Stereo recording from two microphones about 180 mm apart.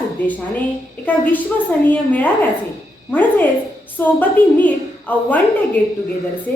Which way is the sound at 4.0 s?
10° left (ahead or behind).